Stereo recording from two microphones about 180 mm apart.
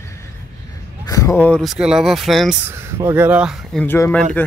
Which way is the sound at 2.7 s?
15° right (ahead or behind).